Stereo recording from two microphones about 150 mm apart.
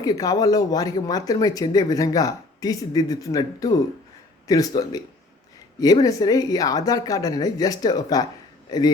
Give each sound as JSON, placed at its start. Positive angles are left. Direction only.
{"t": 0.0, "sound": "speech", "side_deg": 25}